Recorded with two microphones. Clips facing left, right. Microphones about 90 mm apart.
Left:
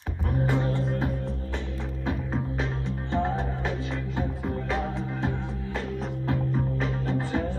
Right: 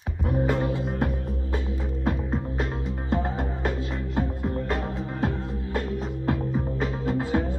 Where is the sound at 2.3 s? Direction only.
5° right (ahead or behind).